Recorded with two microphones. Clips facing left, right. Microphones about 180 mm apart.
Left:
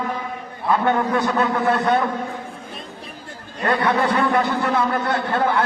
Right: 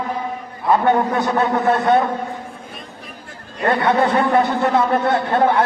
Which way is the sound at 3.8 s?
25° right (ahead or behind).